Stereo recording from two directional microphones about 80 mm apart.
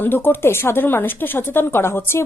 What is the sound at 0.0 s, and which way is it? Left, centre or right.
A woman's voice, left.